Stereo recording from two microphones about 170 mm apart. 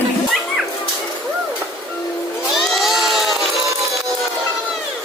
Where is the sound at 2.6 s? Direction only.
Centre (ahead or behind).